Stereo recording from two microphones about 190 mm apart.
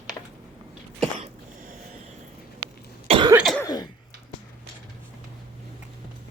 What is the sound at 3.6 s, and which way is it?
Throat clearing, 20° left (ahead or behind).